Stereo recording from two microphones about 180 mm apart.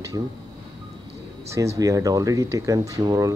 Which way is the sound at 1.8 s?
20° right (ahead or behind).